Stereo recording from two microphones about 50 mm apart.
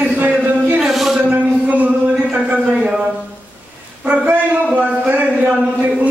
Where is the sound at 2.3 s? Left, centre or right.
Right.